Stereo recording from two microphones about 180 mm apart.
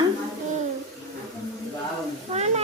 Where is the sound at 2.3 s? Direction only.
35° right (ahead or behind).